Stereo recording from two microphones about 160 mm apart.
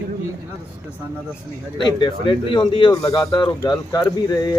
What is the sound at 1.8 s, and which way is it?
Speech, 30° left (ahead or behind).